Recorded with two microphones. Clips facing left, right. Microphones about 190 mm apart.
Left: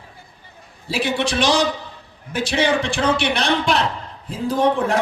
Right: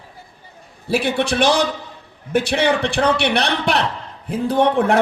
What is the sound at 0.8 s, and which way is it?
A man's voice, 55° right (ahead or behind).